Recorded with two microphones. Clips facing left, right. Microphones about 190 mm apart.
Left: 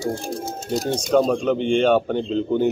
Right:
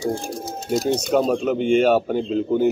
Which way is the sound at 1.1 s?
5° right (ahead or behind).